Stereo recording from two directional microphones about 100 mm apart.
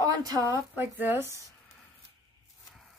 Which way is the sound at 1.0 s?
20° right (ahead or behind).